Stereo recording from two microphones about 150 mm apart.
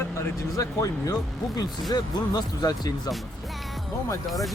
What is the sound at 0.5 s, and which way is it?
Speech, 20° left (ahead or behind).